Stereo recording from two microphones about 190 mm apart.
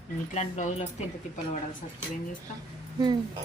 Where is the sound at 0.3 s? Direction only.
35° left (ahead or behind).